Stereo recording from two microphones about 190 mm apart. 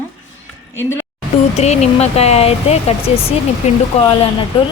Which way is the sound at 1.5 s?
35° left (ahead or behind).